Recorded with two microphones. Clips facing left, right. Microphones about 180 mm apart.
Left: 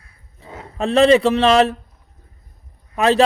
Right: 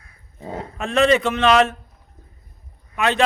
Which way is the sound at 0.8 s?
35° left (ahead or behind).